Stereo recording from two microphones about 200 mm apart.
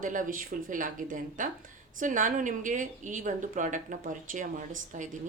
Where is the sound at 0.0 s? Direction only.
40° right (ahead or behind).